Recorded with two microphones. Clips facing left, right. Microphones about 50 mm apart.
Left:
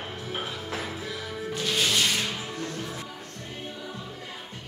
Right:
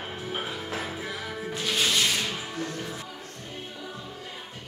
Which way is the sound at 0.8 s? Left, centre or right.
Centre.